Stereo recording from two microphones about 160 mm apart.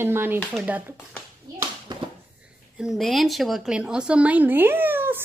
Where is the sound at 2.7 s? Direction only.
Centre (ahead or behind).